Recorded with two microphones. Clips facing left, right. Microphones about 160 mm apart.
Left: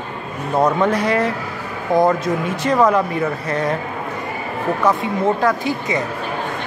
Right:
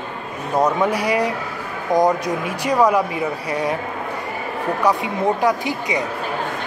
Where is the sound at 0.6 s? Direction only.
10° right (ahead or behind).